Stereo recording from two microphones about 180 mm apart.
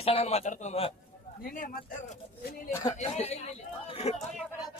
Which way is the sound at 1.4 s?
50° left (ahead or behind).